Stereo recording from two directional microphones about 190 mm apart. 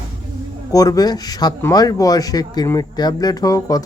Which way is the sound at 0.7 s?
20° left (ahead or behind).